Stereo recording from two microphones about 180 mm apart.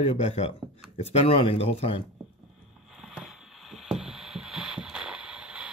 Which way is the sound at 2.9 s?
Centre (ahead or behind).